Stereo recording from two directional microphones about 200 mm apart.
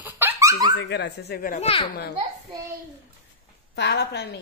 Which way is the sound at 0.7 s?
60° left (ahead or behind).